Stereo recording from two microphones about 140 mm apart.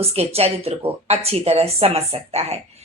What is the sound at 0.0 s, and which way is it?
Speech, 45° right (ahead or behind).